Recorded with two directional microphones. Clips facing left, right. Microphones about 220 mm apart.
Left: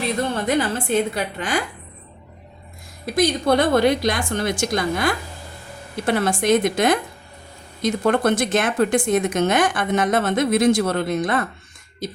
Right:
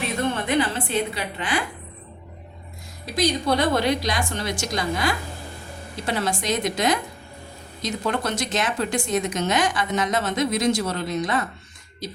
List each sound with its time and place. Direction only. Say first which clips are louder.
0.4 s speech: left 2 dB; 45° left (ahead or behind)
3.2 s speech: left 4 dB; 50° left (ahead or behind)